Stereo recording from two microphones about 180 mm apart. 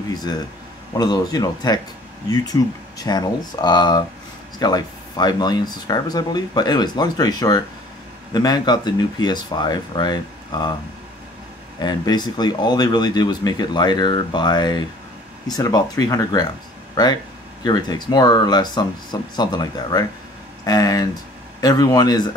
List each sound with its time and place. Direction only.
0.1 s speech: 20° left (ahead or behind)
11.8 s speech: 25° left (ahead or behind)